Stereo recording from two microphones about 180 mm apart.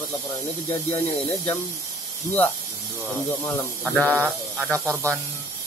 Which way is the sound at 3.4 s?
10° left (ahead or behind).